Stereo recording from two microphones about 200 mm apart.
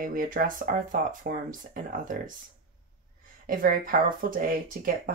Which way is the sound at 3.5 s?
45° right (ahead or behind).